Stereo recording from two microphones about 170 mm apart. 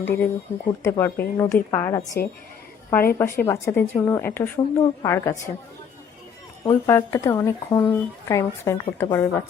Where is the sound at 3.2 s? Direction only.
15° left (ahead or behind).